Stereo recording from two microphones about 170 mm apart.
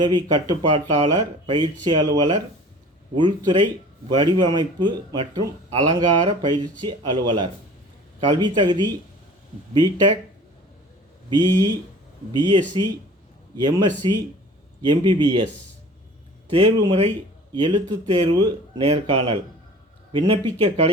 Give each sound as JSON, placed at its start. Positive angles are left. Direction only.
{"t": 0.0, "sound": "speech", "side_deg": -25}
{"t": 11.3, "sound": "speech", "side_deg": -25}
{"t": 16.5, "sound": "speech", "side_deg": -35}